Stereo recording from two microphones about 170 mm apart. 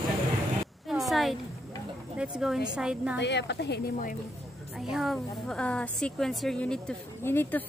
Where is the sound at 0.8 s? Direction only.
Centre (ahead or behind).